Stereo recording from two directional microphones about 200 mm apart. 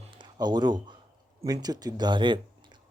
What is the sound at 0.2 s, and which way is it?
Speech, 20° right (ahead or behind).